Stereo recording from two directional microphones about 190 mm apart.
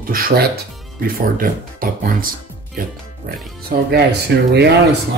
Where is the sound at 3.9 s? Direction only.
60° right (ahead or behind).